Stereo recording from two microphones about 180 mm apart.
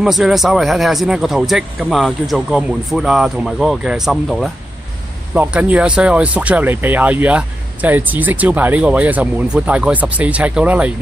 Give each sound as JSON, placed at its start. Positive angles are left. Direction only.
{"t": 0.0, "sound": "speech", "side_deg": 0}